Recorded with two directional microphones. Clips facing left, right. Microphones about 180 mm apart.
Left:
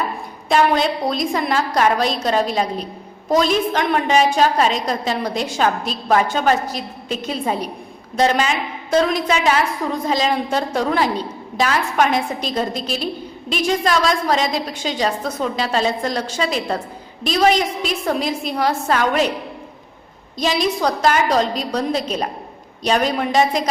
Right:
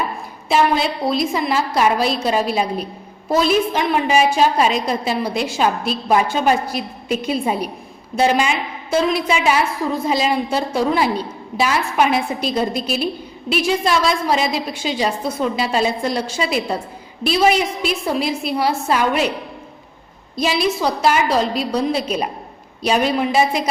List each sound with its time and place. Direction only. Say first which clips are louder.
0.4 s a woman's voice: left 1 dB; 5° right (ahead or behind)
20.6 s a woman's voice: even; 5° right (ahead or behind)